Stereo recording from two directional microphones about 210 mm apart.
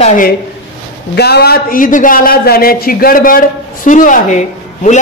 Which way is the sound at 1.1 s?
50° left (ahead or behind).